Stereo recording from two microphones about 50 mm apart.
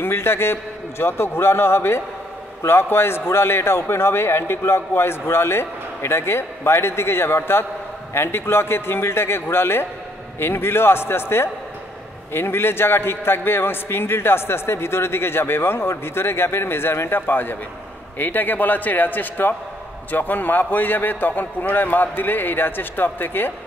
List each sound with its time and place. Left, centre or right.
0.0 s a man's voice: left